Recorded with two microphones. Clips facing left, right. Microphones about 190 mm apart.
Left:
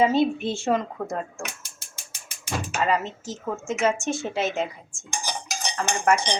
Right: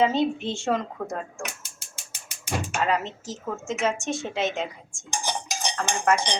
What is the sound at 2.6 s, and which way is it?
Cutlery, centre (ahead or behind).